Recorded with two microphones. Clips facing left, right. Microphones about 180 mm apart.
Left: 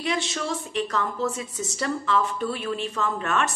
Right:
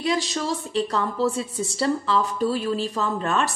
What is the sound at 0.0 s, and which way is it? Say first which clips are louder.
A woman's voice: right 3 dB; 35° right (ahead or behind).